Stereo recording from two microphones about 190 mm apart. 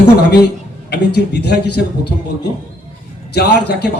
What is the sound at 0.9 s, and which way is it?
A man's voice, 60° left (ahead or behind).